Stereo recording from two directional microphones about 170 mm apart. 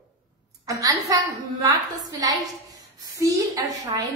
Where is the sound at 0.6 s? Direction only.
20° right (ahead or behind).